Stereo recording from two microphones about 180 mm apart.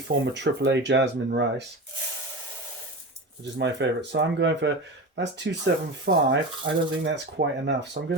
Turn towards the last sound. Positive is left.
turn(degrees=-75)  # may be behind; listen again after turning